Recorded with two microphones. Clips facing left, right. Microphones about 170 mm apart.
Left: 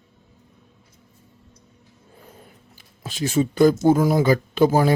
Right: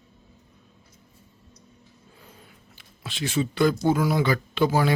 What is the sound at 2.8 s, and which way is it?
Speech, 40° left (ahead or behind).